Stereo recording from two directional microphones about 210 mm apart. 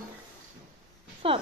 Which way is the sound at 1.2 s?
25° right (ahead or behind).